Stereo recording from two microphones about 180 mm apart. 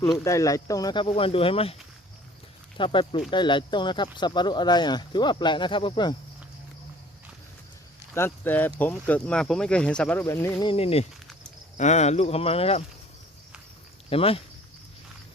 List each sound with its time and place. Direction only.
0.0 s speech: 15° left (ahead or behind); by 1.7 s 30° left (ahead or behind)
2.7 s speech: 30° left (ahead or behind)
8.1 s speech: 10° left (ahead or behind); by 12.8 s 35° left (ahead or behind)
14.1 s speech: 30° left (ahead or behind)